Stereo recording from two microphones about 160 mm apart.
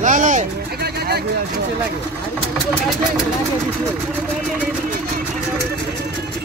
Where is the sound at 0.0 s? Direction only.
50° right (ahead or behind).